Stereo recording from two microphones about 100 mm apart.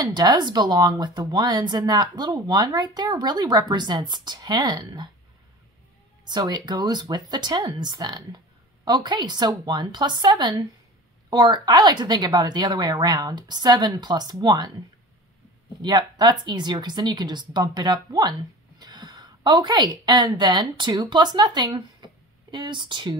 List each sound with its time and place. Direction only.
0.0 s speech: 45° right (ahead or behind)
6.2 s speech: 45° right (ahead or behind)
15.8 s a woman's voice: 45° right (ahead or behind)